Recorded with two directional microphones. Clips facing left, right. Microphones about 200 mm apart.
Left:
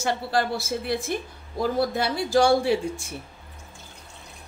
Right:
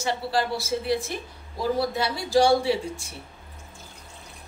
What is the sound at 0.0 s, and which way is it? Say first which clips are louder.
A woman's voice: left 1 dB; 55° left (ahead or behind).